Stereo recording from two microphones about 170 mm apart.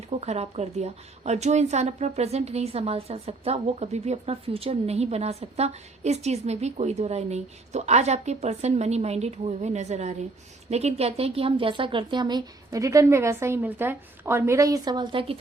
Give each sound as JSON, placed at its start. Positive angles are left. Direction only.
{"t": 0.1, "sound": "a woman's voice", "side_deg": -40}